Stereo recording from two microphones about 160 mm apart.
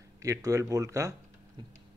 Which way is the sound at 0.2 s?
20° right (ahead or behind).